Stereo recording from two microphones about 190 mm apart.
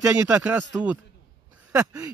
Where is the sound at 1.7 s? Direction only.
10° right (ahead or behind).